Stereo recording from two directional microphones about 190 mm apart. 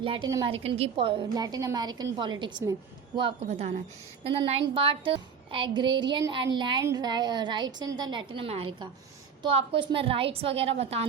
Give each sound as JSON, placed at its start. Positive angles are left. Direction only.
{"t": 0.0, "sound": "a woman's voice", "side_deg": -30}